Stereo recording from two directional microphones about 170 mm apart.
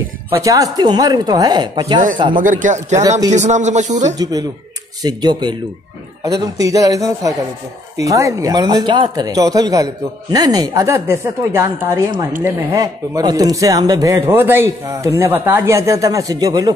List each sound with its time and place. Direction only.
0.4 s speech: 20° right (ahead or behind)
2.3 s speech: 50° right (ahead or behind)
4.2 s a woman's voice: 20° right (ahead or behind)